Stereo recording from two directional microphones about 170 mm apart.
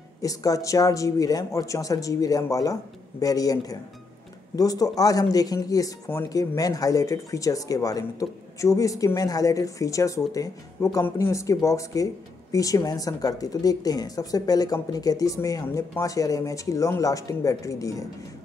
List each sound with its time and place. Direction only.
0.2 s speech: 20° left (ahead or behind)